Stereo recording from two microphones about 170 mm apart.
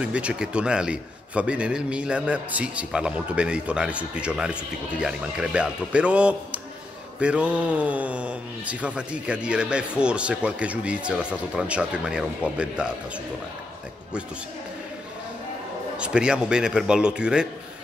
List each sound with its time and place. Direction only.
0.0 s a man's voice: 5° right (ahead or behind)
16.0 s a man's voice: 5° right (ahead or behind)